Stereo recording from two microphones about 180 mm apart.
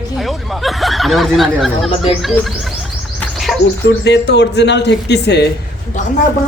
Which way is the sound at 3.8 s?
70° left (ahead or behind).